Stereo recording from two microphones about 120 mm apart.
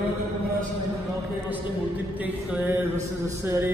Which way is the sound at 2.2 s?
10° right (ahead or behind).